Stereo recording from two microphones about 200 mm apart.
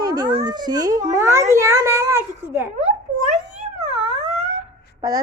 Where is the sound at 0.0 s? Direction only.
20° right (ahead or behind).